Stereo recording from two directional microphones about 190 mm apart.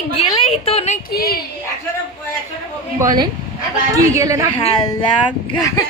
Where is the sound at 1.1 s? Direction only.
55° left (ahead or behind).